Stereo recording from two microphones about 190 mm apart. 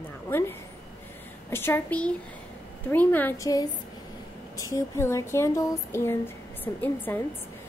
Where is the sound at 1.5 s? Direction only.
10° left (ahead or behind).